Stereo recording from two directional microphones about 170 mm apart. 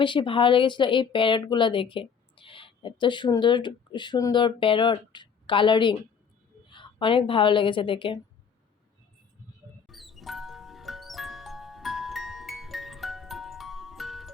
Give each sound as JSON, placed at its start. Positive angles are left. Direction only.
{"t": 0.0, "sound": "a woman's voice", "side_deg": 30}
{"t": 9.8, "sound": "music", "side_deg": 0}